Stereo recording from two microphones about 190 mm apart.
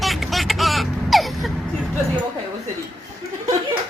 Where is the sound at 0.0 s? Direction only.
Centre (ahead or behind).